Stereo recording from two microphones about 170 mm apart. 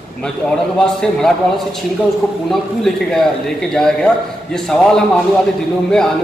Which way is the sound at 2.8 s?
5° left (ahead or behind).